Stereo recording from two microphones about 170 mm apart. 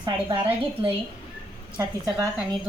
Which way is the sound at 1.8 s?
25° right (ahead or behind).